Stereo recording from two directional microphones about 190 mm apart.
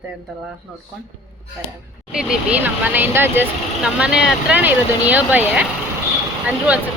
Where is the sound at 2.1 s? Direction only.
5° right (ahead or behind).